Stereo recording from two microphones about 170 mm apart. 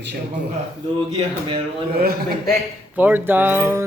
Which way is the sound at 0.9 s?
35° right (ahead or behind).